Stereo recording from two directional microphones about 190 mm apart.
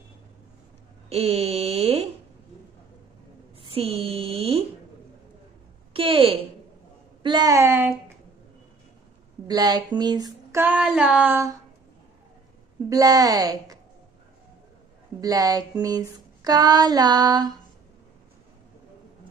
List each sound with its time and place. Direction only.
1.1 s speech: 30° right (ahead or behind)
3.6 s speech: 30° right (ahead or behind)
5.9 s speech: 30° right (ahead or behind)
7.2 s female singing: 20° right (ahead or behind)
9.5 s speech: 20° right (ahead or behind)
10.6 s female singing: 5° right (ahead or behind)
12.9 s speech: 20° right (ahead or behind)
15.1 s speech: 20° right (ahead or behind)